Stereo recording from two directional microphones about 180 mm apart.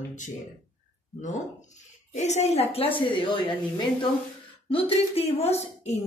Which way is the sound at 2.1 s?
40° left (ahead or behind).